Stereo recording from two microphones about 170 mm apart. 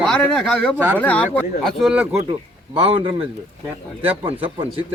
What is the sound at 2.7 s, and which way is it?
Speech, 30° right (ahead or behind).